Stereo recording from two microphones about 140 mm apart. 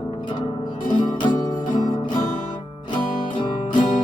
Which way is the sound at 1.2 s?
25° left (ahead or behind).